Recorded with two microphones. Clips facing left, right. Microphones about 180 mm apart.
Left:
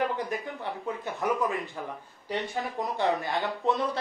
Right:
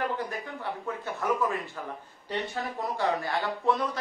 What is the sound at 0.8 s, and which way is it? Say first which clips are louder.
Speech: left 1 dB; 15° left (ahead or behind).